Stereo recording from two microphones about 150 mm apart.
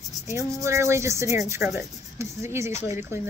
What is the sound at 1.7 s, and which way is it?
Speech, 15° right (ahead or behind).